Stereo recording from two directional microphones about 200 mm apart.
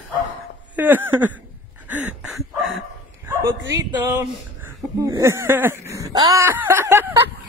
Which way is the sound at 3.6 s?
15° right (ahead or behind).